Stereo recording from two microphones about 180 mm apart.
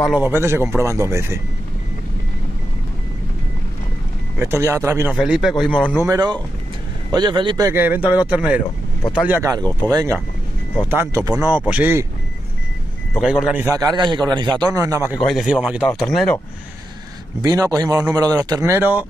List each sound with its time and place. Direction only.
0.0 s a man's voice: 5° right (ahead or behind)
4.4 s a man's voice: 15° right (ahead or behind)
5.2 s a man's voice: 5° right (ahead or behind)
6.0 s a man's voice: 20° right (ahead or behind)
9.8 s a man's voice: 20° right (ahead or behind)
13.2 s a man's voice: 5° right (ahead or behind)
13.7 s speech: 20° right (ahead or behind)
15.1 s a man's voice: centre (ahead or behind)
17.4 s speech: 20° right (ahead or behind)